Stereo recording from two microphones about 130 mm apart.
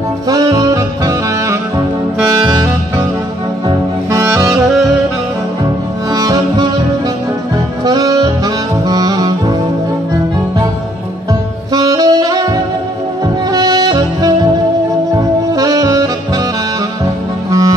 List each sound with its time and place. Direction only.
0.3 s saxophone: 30° right (ahead or behind)
3.6 s saxophone: 25° right (ahead or behind)
6.1 s music: 30° right (ahead or behind)
7.8 s music: 30° right (ahead or behind)
11.7 s saxophone: 30° right (ahead or behind)
13.5 s music: 30° right (ahead or behind)
15.1 s saxophone: 30° right (ahead or behind)
17.5 s music: 25° right (ahead or behind)